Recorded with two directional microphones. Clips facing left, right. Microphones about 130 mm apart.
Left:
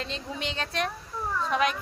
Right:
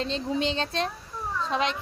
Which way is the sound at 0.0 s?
30° right (ahead or behind).